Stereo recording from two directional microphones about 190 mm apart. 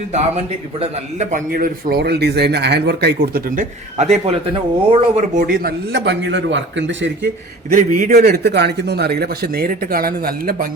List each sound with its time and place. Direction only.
0.1 s a man's voice: 35° right (ahead or behind); by 7.3 s 70° right (ahead or behind)
7.7 s a man's voice: 45° right (ahead or behind)